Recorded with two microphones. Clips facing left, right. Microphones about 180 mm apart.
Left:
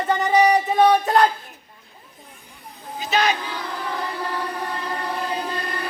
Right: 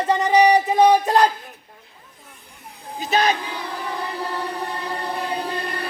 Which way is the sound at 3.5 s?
10° right (ahead or behind).